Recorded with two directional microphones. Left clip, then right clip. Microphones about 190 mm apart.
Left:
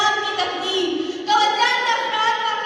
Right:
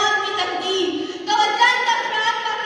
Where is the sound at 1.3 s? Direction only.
15° right (ahead or behind).